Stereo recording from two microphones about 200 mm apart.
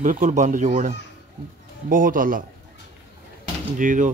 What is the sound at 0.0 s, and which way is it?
Speech, 40° right (ahead or behind).